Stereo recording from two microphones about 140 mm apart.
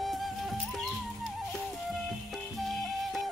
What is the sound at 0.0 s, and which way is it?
Music, centre (ahead or behind).